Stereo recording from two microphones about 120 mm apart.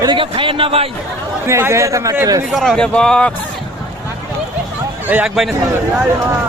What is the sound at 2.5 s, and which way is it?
Speech, 5° left (ahead or behind).